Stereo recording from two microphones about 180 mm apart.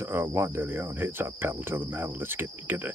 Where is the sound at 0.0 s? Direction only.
15° right (ahead or behind).